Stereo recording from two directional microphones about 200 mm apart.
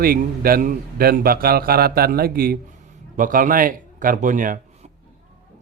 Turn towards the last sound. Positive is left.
turn(degrees=-40)  # may be behind; listen again after turning